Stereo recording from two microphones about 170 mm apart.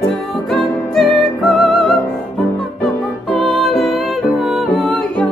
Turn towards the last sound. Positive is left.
turn(degrees=0)  # may be behind; listen again after turning